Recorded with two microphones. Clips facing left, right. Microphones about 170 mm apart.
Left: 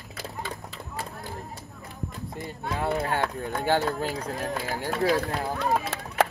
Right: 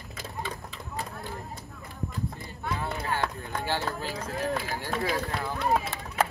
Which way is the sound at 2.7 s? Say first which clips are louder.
Left 6 dB; 60° left (ahead or behind).